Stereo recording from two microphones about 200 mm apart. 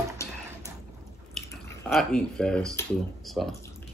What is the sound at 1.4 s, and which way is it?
Chewing, 5° left (ahead or behind).